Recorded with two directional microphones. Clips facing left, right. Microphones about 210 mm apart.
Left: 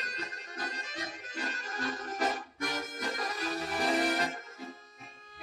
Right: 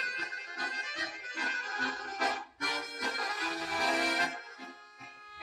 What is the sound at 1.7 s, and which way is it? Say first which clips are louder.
Accordion: left 4 dB; 30° left (ahead or behind).